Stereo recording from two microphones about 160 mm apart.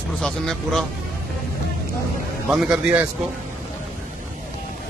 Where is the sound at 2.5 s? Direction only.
5° right (ahead or behind).